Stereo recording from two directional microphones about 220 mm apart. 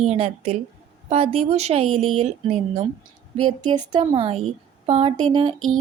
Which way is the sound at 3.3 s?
75° right (ahead or behind).